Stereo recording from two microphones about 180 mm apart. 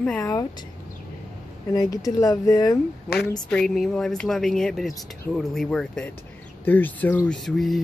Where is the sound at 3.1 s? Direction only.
55° left (ahead or behind).